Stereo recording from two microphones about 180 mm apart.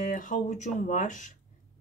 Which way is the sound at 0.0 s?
45° left (ahead or behind).